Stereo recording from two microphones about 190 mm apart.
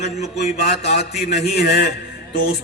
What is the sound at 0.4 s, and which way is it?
Speech, 35° left (ahead or behind).